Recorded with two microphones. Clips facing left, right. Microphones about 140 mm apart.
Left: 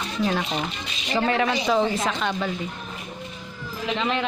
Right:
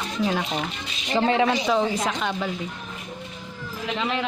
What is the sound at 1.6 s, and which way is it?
Speech, centre (ahead or behind).